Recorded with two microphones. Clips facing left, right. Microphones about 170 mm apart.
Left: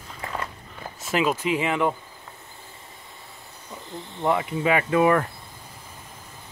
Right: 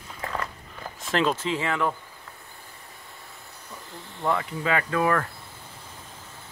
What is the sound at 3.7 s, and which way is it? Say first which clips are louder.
Speech: left 5 dB; 20° left (ahead or behind).